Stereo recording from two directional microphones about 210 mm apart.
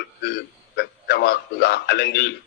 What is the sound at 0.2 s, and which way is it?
A man's voice, 50° left (ahead or behind).